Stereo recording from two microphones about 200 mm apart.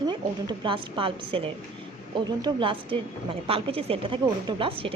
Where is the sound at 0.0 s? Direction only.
20° right (ahead or behind).